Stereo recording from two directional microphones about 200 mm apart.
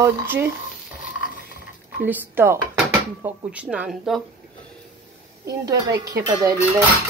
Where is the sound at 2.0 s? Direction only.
10° right (ahead or behind).